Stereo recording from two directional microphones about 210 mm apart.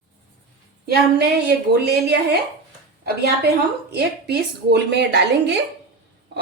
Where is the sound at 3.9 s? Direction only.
50° right (ahead or behind).